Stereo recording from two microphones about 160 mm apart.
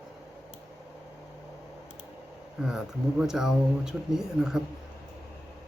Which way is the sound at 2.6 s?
5° right (ahead or behind).